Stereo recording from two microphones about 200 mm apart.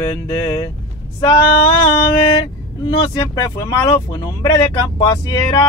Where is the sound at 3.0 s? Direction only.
15° left (ahead or behind).